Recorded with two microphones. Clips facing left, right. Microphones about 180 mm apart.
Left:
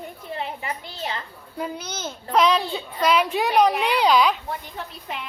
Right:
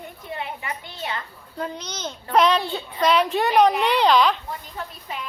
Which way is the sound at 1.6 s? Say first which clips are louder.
Even; 5° left (ahead or behind).